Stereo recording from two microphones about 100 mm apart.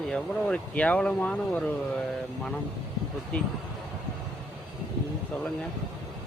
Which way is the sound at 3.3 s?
15° left (ahead or behind).